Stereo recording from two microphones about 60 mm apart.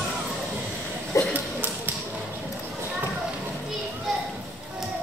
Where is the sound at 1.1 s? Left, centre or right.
Left.